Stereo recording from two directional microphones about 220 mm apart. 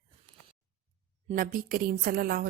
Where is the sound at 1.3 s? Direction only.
40° right (ahead or behind).